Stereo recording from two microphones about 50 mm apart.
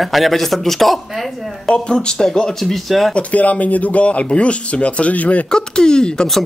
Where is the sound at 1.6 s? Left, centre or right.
Centre.